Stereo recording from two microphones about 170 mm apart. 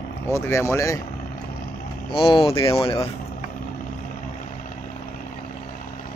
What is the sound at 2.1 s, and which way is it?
Speech, 30° left (ahead or behind).